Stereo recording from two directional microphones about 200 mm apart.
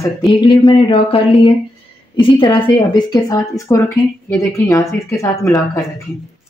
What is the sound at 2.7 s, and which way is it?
Speech, 20° left (ahead or behind).